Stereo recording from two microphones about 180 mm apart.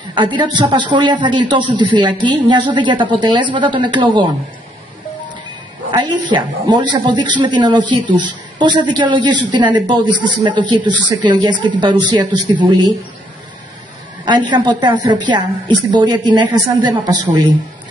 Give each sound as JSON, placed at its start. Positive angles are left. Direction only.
{"t": 0.1, "sound": "a woman's voice", "side_deg": -25}
{"t": 5.9, "sound": "a woman's voice", "side_deg": -25}
{"t": 10.6, "sound": "speech", "side_deg": 10}
{"t": 11.4, "sound": "a woman's voice", "side_deg": -25}
{"t": 14.2, "sound": "a woman's voice", "side_deg": -25}